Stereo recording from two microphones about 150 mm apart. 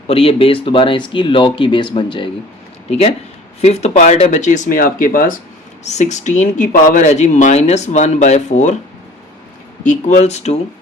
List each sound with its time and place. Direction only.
0.1 s speech: 40° left (ahead or behind)
2.9 s speech: 45° left (ahead or behind); by 5.4 s 65° left (ahead or behind)
5.8 s speech: 50° left (ahead or behind)
9.8 s speech: 50° left (ahead or behind)